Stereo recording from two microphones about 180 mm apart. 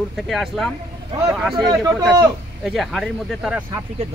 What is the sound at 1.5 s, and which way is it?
Speech, 25° right (ahead or behind).